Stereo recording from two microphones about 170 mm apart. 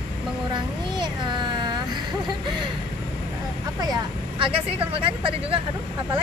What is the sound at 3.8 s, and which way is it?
Vehicle, 25° right (ahead or behind).